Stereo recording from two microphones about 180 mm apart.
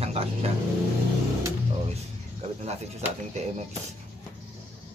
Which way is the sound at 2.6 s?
35° right (ahead or behind).